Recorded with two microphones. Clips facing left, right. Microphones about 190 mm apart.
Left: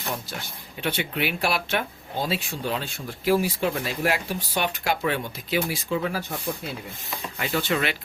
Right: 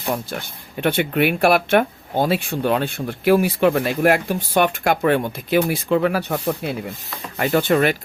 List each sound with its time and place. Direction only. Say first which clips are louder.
0.8 s speech: right 9 dB; 55° right (ahead or behind)
7.3 s speech: right 9 dB; 50° right (ahead or behind)